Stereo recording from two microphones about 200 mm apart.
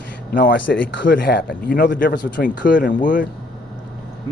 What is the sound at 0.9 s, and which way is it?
Speech, 65° left (ahead or behind).